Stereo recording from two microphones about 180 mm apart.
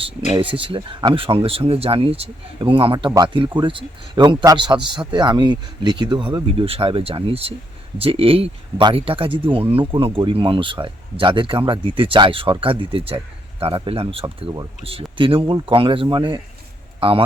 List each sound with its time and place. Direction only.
0.3 s a man's voice: 30° right (ahead or behind)
3.1 s speech: 15° right (ahead or behind)
3.3 s a man's voice: 25° right (ahead or behind)